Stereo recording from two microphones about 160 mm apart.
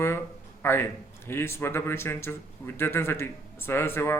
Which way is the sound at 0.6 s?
15° left (ahead or behind).